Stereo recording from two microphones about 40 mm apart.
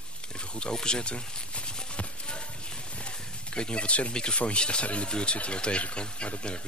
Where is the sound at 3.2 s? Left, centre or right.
Left.